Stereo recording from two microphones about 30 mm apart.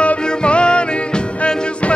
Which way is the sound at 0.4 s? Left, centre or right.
Left.